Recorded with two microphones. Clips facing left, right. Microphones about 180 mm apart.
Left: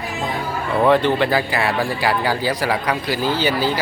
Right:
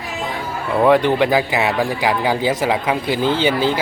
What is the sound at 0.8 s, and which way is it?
Speech, 10° right (ahead or behind).